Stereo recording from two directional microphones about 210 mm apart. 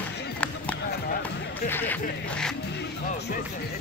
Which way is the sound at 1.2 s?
10° left (ahead or behind).